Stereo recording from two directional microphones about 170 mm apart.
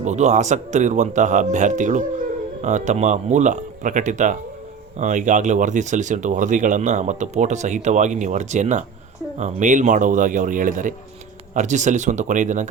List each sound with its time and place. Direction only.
0.0 s speech: 45° right (ahead or behind)